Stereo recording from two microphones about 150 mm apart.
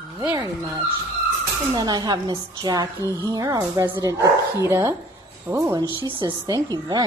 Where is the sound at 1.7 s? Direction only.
25° right (ahead or behind).